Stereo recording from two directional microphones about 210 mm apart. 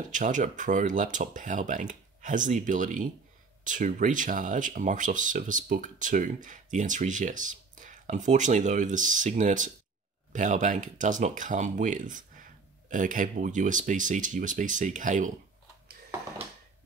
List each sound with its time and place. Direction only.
0.1 s speech: 40° right (ahead or behind)